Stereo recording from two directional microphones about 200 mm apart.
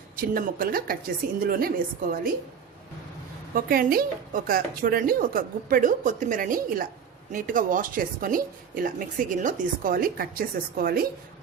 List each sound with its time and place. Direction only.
0.2 s speech: 45° right (ahead or behind)
3.5 s speech: 45° right (ahead or behind)